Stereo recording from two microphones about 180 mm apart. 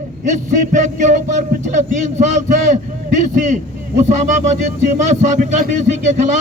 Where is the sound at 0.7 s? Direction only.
45° right (ahead or behind).